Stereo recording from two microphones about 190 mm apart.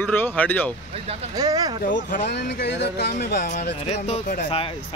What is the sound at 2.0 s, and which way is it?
Speech, 55° left (ahead or behind).